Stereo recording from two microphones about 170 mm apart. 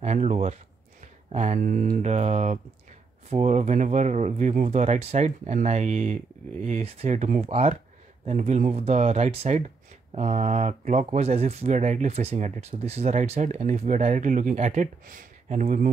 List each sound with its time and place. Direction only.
0.0 s speech: 40° right (ahead or behind)